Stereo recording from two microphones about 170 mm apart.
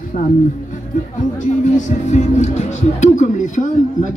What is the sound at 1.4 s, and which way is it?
Speech, 45° left (ahead or behind).